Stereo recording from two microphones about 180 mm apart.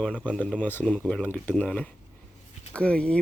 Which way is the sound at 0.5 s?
10° left (ahead or behind).